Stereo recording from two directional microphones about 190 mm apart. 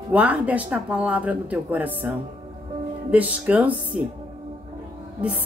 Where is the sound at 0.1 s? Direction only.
10° right (ahead or behind).